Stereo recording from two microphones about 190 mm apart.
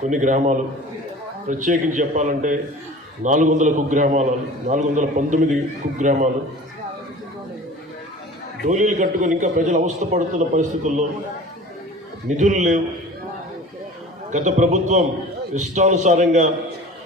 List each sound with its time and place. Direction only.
0.0 s a man's voice: 40° right (ahead or behind)
8.6 s a man's voice: 40° right (ahead or behind)
12.4 s a man's voice: 40° right (ahead or behind)
14.3 s a man's voice: 40° right (ahead or behind)